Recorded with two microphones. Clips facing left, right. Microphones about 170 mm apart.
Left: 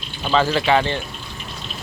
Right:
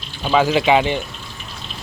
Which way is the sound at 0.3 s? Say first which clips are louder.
Right 3 dB; 10° right (ahead or behind).